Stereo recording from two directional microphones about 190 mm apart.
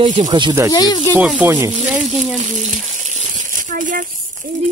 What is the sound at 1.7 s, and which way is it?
Speech, 40° right (ahead or behind).